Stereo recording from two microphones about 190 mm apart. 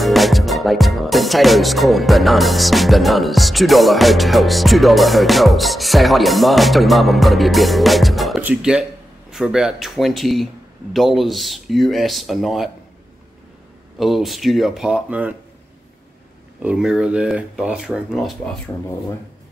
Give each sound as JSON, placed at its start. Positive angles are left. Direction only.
{"t": 0.0, "sound": "music", "side_deg": 0}
{"t": 13.9, "sound": "music", "side_deg": 0}
{"t": 16.6, "sound": "music", "side_deg": -5}